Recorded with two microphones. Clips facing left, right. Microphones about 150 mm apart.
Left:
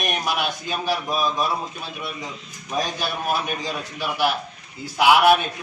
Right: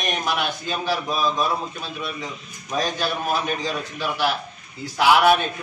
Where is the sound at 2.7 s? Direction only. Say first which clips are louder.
Right 2 dB; 10° left (ahead or behind).